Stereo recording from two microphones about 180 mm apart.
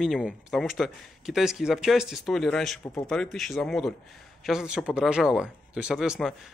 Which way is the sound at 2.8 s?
20° left (ahead or behind).